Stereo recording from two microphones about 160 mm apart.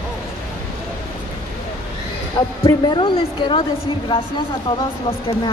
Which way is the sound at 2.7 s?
30° left (ahead or behind).